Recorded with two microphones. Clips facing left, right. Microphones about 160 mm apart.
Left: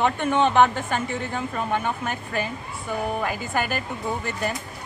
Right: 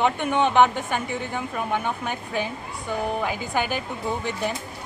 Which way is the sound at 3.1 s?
Centre (ahead or behind).